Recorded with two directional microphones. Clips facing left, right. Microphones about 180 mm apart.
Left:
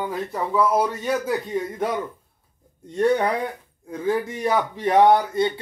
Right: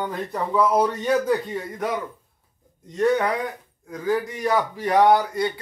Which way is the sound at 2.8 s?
30° left (ahead or behind).